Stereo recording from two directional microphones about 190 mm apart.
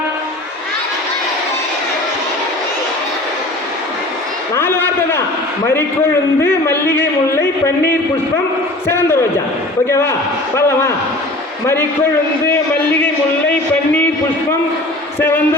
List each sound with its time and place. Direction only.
4.5 s a sound: 10° left (ahead or behind)
6.4 s a man's voice: 10° left (ahead or behind)
8.9 s a man's voice: 10° left (ahead or behind)
15.2 s a man's voice: 10° left (ahead or behind)